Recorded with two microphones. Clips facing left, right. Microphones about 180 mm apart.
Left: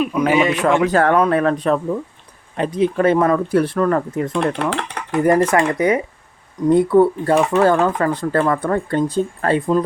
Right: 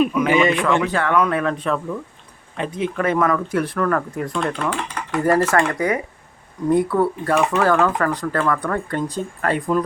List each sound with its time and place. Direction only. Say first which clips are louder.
0.1 s speech: left 1 dB; 40° left (ahead or behind); by 4.3 s 20° left (ahead or behind)
4.7 s speech: left 2 dB; 90° left
5.1 s speech: left 3 dB; 20° left (ahead or behind)